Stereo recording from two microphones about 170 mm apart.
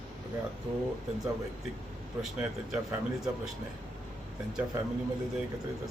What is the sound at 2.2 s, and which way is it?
Speech, centre (ahead or behind).